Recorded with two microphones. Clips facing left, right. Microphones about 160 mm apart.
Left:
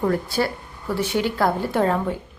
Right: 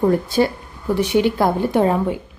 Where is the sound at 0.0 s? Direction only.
20° right (ahead or behind).